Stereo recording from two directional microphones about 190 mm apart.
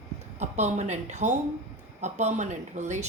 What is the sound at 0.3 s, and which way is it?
Speech, 35° right (ahead or behind).